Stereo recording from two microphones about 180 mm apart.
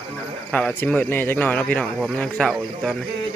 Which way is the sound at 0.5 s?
10° left (ahead or behind).